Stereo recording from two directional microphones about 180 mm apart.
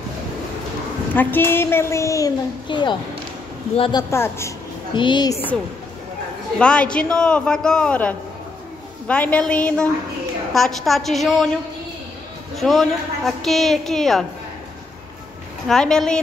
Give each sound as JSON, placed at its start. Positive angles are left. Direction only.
{"t": 1.1, "sound": "a woman's voice", "side_deg": 10}
{"t": 4.1, "sound": "a woman's voice", "side_deg": 15}
{"t": 4.9, "sound": "a woman's voice", "side_deg": 25}
{"t": 6.6, "sound": "a woman's voice", "side_deg": 5}
{"t": 12.5, "sound": "a woman's voice", "side_deg": 0}
{"t": 15.7, "sound": "a woman's voice", "side_deg": 5}